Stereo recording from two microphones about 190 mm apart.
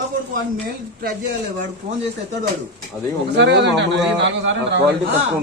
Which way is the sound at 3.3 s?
65° right (ahead or behind).